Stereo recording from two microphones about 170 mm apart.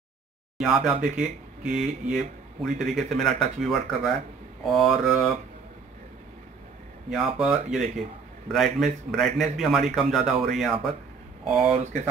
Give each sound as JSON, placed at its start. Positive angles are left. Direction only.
{"t": 0.6, "sound": "speech", "side_deg": 0}
{"t": 7.1, "sound": "speech", "side_deg": 0}
{"t": 11.7, "sound": "speech", "side_deg": -40}